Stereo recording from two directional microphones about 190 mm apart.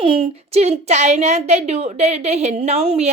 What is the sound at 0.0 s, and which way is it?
A woman's voice, 30° right (ahead or behind).